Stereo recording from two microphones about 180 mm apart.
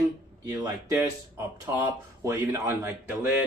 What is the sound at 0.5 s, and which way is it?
Speech, 20° right (ahead or behind).